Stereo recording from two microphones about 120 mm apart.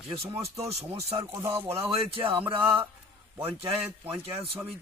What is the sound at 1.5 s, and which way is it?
Speech, 55° right (ahead or behind).